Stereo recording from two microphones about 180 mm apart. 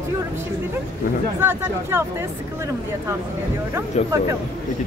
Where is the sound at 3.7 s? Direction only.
15° right (ahead or behind).